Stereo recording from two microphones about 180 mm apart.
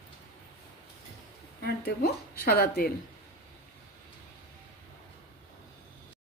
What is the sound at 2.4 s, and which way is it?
Speech, 60° left (ahead or behind).